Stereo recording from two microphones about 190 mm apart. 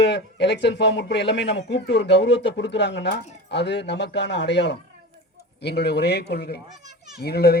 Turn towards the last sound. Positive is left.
turn(degrees=55)  # may be behind; listen again after turning